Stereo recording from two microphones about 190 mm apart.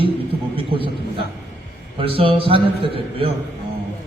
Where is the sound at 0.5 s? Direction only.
30° right (ahead or behind).